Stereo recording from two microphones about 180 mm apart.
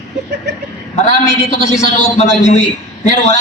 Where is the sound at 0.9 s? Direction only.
40° left (ahead or behind).